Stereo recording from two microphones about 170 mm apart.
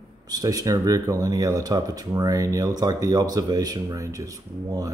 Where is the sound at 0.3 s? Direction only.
20° right (ahead or behind).